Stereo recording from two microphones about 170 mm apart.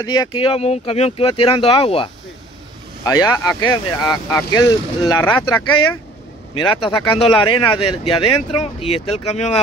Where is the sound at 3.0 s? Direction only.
20° left (ahead or behind).